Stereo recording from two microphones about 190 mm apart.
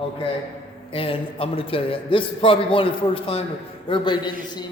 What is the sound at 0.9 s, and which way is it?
A man's voice, 30° left (ahead or behind).